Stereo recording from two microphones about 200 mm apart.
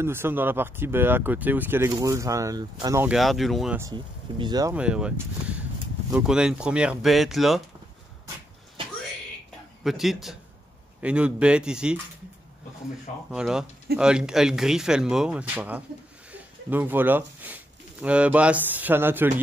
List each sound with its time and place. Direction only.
0.0 s speech: 10° right (ahead or behind)
3.2 s speech: centre (ahead or behind)
4.4 s speech: 20° right (ahead or behind)
4.7 s speech: 5° right (ahead or behind)
9.8 s speech: centre (ahead or behind)
13.3 s speech: 5° right (ahead or behind)
16.3 s a sound: 10° right (ahead or behind)
18.0 s speech: 5° right (ahead or behind)